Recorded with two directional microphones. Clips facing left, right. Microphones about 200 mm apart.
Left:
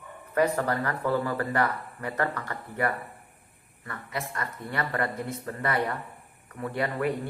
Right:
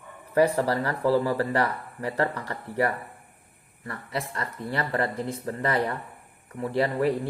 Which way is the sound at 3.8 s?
30° right (ahead or behind).